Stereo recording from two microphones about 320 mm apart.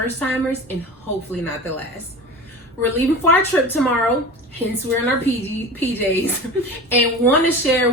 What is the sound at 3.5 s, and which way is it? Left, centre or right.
Speech, centre.